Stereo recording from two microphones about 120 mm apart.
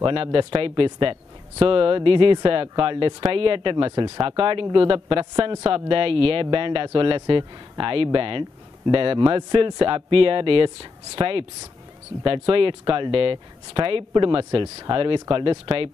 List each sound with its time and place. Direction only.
0.0 s speech: 50° right (ahead or behind)